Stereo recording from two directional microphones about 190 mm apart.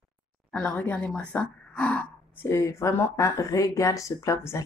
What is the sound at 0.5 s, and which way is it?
Speech, 5° left (ahead or behind).